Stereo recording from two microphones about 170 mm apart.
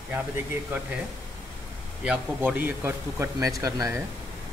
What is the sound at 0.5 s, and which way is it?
Speech, 10° right (ahead or behind).